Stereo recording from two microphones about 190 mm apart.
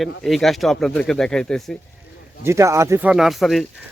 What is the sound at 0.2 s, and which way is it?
A man's voice, centre (ahead or behind).